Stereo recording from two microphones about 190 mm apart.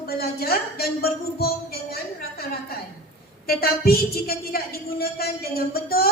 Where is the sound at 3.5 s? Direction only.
55° left (ahead or behind).